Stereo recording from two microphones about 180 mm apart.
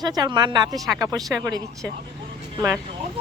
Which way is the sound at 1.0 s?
20° right (ahead or behind).